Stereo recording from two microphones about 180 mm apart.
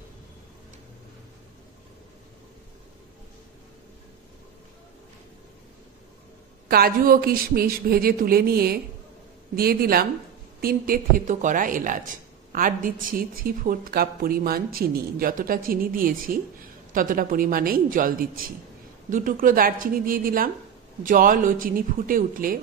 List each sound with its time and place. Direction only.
6.7 s speech: 55° right (ahead or behind)